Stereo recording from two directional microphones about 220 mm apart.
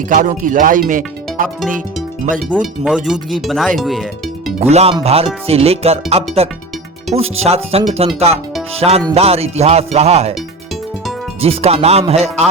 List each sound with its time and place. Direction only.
0.1 s speech: 40° right (ahead or behind)
2.5 s speech: 5° right (ahead or behind)
4.6 s speech: 30° right (ahead or behind)
11.3 s speech: 25° right (ahead or behind)